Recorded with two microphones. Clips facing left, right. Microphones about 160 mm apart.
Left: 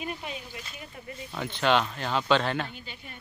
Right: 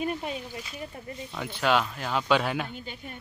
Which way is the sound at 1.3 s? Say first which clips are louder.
Left 1 dB; 5° right (ahead or behind).